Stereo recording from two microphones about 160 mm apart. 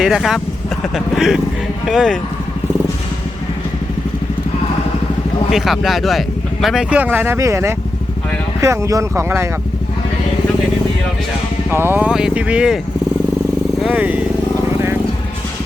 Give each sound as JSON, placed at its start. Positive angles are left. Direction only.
{"t": 0.0, "sound": "speech", "side_deg": -5}
{"t": 5.5, "sound": "speech", "side_deg": 0}
{"t": 11.7, "sound": "speech", "side_deg": -15}
{"t": 13.8, "sound": "speech", "side_deg": -10}